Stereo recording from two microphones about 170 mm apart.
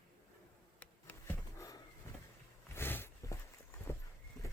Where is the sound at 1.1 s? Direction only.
5° left (ahead or behind).